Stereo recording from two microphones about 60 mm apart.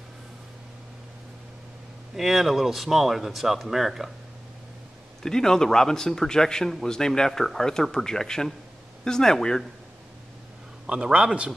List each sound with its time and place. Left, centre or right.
2.1 s speech: centre
5.2 s speech: centre
10.9 s a man's voice: centre